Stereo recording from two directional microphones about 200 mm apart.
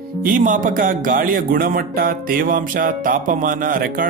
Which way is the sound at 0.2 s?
45° right (ahead or behind).